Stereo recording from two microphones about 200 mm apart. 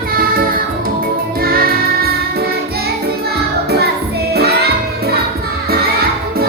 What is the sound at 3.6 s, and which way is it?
Music, 55° right (ahead or behind).